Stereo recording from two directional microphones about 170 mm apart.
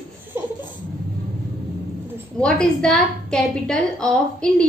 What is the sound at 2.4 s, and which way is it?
A woman's voice, 5° left (ahead or behind).